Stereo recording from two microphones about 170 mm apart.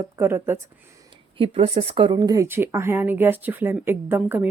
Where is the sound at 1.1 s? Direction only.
30° right (ahead or behind).